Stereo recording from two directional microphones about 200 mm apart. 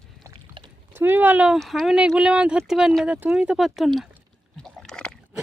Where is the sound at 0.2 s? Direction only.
20° right (ahead or behind).